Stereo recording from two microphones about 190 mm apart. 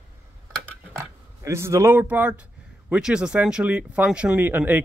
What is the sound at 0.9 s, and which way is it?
Speech, 15° right (ahead or behind).